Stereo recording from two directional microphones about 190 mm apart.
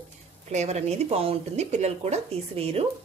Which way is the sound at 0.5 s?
35° right (ahead or behind).